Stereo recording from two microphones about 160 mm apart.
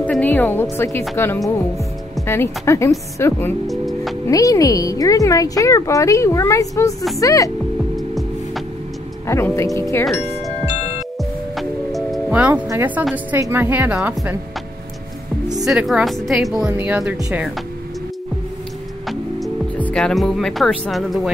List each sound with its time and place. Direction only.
0.0 s a woman's voice: 10° left (ahead or behind)
3.6 s music: centre (ahead or behind)
4.3 s a woman's voice: 20° left (ahead or behind)
7.9 s music: centre (ahead or behind)
9.3 s a woman's voice: 20° left (ahead or behind)
11.5 s music: centre (ahead or behind)
12.6 s a woman's voice: 10° right (ahead or behind)
15.6 s a woman's voice: centre (ahead or behind)
19.0 s music: 5° left (ahead or behind)